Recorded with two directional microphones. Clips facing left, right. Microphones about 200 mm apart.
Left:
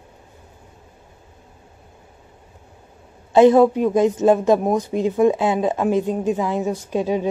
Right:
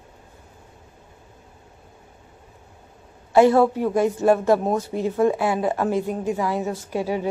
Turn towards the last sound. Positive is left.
turn(degrees=20)  # may be behind; listen again after turning